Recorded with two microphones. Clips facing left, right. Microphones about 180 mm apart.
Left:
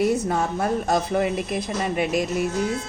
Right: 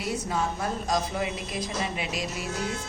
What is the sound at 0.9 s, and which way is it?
A woman's voice, 55° left (ahead or behind).